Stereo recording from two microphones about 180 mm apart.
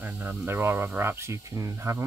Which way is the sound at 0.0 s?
10° right (ahead or behind).